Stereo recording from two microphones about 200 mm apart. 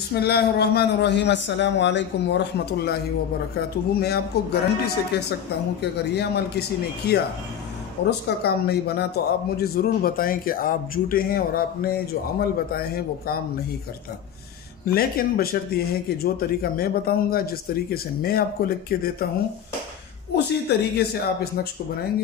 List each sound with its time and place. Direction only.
0.1 s a man's voice: 55° left (ahead or behind)
14.9 s a man's voice: 50° left (ahead or behind)
20.3 s a man's voice: 55° left (ahead or behind)